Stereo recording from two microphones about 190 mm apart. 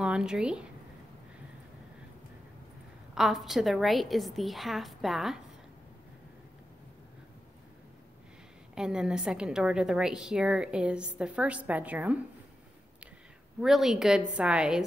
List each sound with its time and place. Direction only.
0.0 s speech: 5° right (ahead or behind)
3.2 s a woman's voice: centre (ahead or behind)
8.7 s a woman's voice: 5° right (ahead or behind)
13.6 s a woman's voice: centre (ahead or behind)